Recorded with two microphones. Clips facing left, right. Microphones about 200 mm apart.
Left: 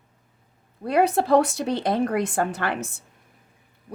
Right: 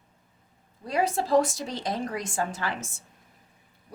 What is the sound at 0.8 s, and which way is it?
Speech, 60° left (ahead or behind).